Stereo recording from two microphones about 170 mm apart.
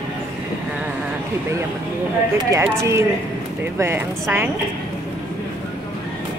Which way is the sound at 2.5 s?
15° right (ahead or behind).